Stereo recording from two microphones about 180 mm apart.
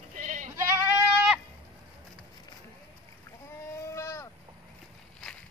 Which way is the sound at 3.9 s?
15° left (ahead or behind).